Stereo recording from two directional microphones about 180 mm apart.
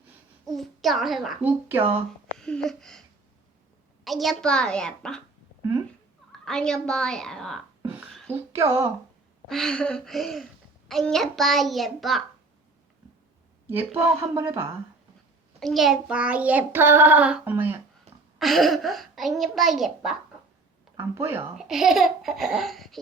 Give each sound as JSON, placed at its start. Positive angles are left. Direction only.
{"t": 0.5, "sound": "a child's voice", "side_deg": 0}
{"t": 1.6, "sound": "child singing", "side_deg": -10}
{"t": 2.4, "sound": "a child's voice", "side_deg": 5}
{"t": 4.0, "sound": "a child's voice", "side_deg": 0}
{"t": 6.4, "sound": "a child's voice", "side_deg": 5}
{"t": 7.8, "sound": "a sound", "side_deg": -10}
{"t": 8.3, "sound": "child singing", "side_deg": -15}
{"t": 9.5, "sound": "a child's voice", "side_deg": 5}
{"t": 13.7, "sound": "child singing", "side_deg": -15}
{"t": 15.6, "sound": "child singing", "side_deg": 0}
{"t": 18.3, "sound": "a child's voice", "side_deg": 0}
{"t": 20.9, "sound": "child singing", "side_deg": -15}
{"t": 21.6, "sound": "a child's voice", "side_deg": 0}